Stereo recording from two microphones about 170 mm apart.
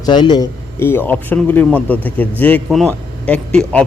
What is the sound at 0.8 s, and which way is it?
A man's voice, 10° left (ahead or behind).